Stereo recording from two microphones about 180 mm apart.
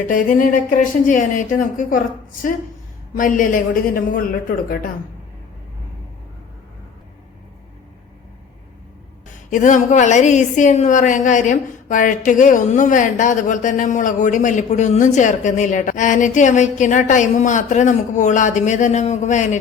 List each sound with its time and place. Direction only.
0.0 s a woman's voice: 50° left (ahead or behind)
3.2 s a woman's voice: 50° left (ahead or behind)
9.5 s a woman's voice: 45° left (ahead or behind)